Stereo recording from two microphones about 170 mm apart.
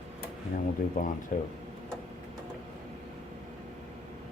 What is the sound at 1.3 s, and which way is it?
Speech, 50° left (ahead or behind).